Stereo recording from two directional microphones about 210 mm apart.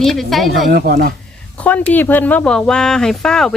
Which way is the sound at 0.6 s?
50° right (ahead or behind).